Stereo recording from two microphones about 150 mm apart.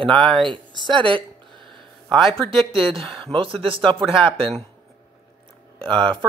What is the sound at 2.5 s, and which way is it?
Speech, 35° right (ahead or behind).